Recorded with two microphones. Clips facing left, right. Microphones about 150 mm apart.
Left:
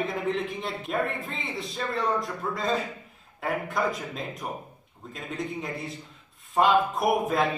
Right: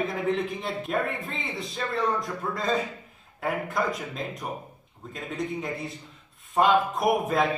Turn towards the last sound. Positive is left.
turn(degrees=0)  # may be behind; listen again after turning